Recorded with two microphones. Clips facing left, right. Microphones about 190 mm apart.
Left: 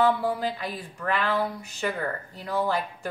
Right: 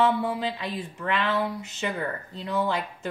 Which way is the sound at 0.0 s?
25° right (ahead or behind).